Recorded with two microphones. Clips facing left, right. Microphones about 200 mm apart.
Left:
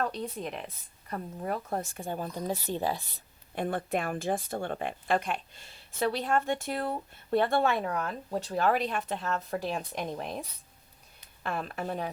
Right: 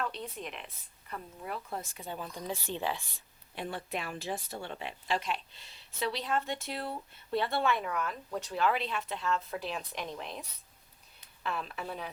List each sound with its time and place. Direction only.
0.0 s speech: 40° left (ahead or behind)
3.5 s speech: 50° left (ahead or behind)
11.4 s speech: 45° left (ahead or behind)